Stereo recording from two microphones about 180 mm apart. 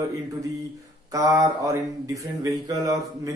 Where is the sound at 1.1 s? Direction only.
15° right (ahead or behind).